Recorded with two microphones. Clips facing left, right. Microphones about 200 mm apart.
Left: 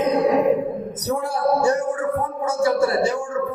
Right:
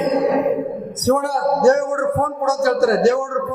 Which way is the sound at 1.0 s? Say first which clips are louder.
Right 5 dB; 80° right.